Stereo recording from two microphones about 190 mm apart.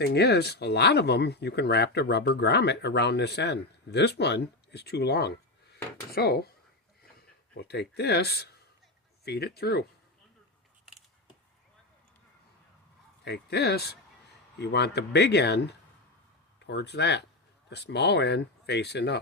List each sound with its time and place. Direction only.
0.0 s speech: 60° left (ahead or behind)
5.7 s a sound: 55° left (ahead or behind)
7.5 s speech: 60° left (ahead or behind)
13.2 s speech: 60° left (ahead or behind)